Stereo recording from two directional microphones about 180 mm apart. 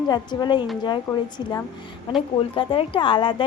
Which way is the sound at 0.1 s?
25° left (ahead or behind).